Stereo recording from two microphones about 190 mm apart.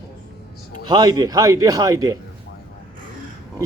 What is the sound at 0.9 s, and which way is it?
A man's voice, 20° right (ahead or behind).